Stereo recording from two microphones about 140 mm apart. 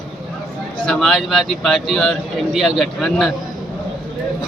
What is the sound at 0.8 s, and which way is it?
A man's voice, 5° left (ahead or behind).